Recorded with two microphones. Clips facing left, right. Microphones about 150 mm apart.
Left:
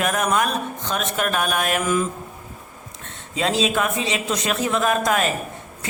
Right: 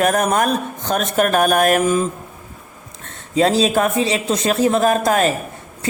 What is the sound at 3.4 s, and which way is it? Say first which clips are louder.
Speech: right 6 dB; 40° right (ahead or behind).